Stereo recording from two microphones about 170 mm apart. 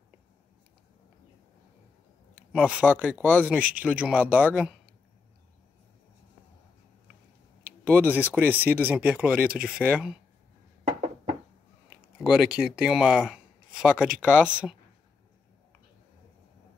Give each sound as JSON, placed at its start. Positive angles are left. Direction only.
{"t": 2.5, "sound": "speech", "side_deg": -5}
{"t": 7.8, "sound": "speech", "side_deg": -10}
{"t": 12.2, "sound": "speech", "side_deg": -5}